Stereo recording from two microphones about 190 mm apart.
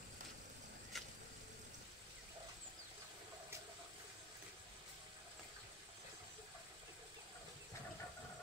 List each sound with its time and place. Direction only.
0.9 s vehicle: centre (ahead or behind)